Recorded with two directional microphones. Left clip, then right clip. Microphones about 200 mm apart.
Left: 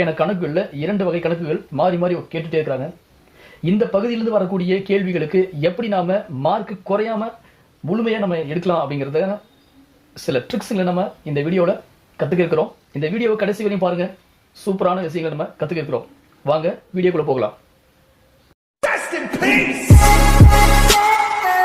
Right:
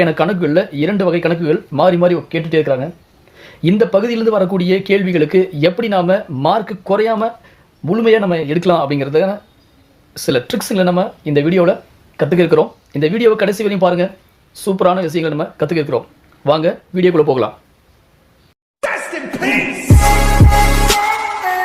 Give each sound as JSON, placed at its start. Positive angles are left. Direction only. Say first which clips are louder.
{"t": 0.0, "sound": "speech", "louder": "right 5 dB", "side_deg": -45}
{"t": 18.8, "sound": "music", "louder": "even", "side_deg": 0}